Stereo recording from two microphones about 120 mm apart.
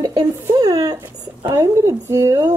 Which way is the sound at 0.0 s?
35° right (ahead or behind).